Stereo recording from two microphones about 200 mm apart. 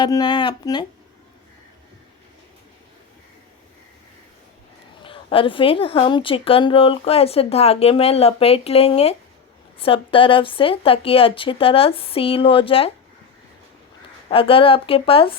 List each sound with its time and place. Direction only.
0.0 s speech: 20° left (ahead or behind)
5.0 s speech: 25° left (ahead or behind)
14.3 s speech: 25° left (ahead or behind)